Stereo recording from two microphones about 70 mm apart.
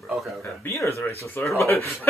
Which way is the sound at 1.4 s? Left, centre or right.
Left.